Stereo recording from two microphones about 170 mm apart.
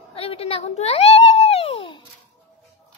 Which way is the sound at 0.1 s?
35° left (ahead or behind).